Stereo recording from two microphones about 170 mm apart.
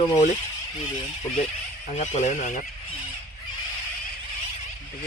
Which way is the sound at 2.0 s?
45° left (ahead or behind).